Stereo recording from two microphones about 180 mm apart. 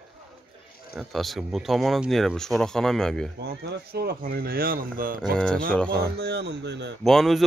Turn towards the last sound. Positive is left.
turn(degrees=0)  # may be behind; listen again after turning